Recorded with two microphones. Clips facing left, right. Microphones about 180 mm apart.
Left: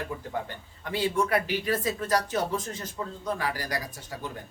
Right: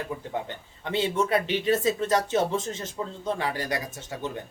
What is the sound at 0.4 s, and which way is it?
Speech, 25° right (ahead or behind).